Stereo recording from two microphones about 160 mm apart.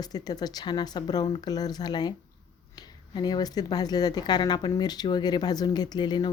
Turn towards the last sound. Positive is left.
turn(degrees=25)  # may be behind; listen again after turning